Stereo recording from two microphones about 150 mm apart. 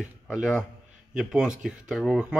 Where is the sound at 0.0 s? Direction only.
5° right (ahead or behind).